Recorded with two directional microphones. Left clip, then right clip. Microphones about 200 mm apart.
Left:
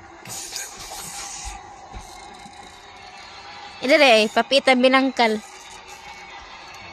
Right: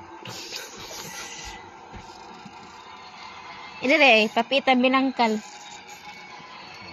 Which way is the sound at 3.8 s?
25° left (ahead or behind).